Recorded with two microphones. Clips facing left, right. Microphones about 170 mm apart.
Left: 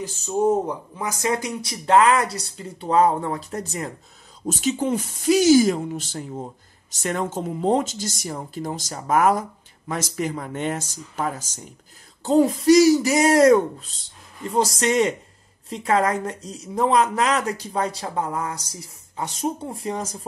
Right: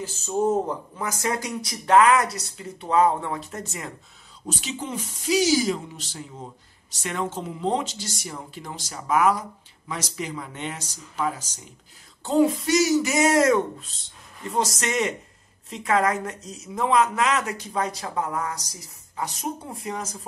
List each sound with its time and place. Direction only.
0.4 s speech: 15° left (ahead or behind); by 20.2 s 30° left (ahead or behind)